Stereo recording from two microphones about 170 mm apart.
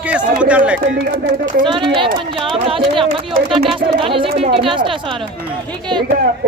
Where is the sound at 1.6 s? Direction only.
30° right (ahead or behind).